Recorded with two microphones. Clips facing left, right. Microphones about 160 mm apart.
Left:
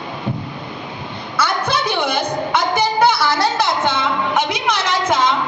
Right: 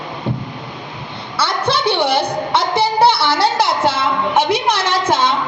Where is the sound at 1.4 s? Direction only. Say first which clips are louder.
Right 1 dB; 30° right (ahead or behind).